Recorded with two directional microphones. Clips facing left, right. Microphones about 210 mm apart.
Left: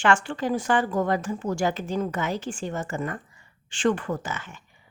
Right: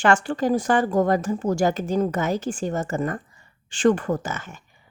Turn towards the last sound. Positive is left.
turn(degrees=-45)  # may be behind; listen again after turning